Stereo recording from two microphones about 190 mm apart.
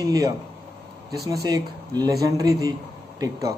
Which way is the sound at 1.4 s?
20° right (ahead or behind).